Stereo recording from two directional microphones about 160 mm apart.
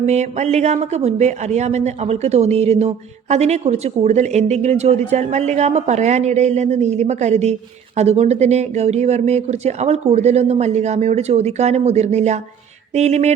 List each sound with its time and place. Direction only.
0.0 s speech: 45° right (ahead or behind)